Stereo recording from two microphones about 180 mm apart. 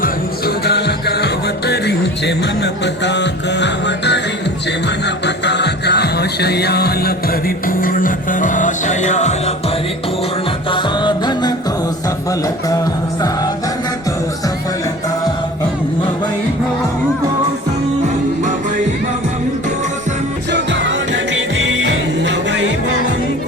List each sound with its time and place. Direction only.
0.0 s music: 60° left (ahead or behind); by 9.3 s 40° left (ahead or behind)
10.7 s music: 25° left (ahead or behind)
20.5 s music: 80° right